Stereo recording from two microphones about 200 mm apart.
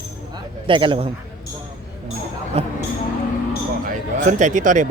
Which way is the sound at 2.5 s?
30° right (ahead or behind).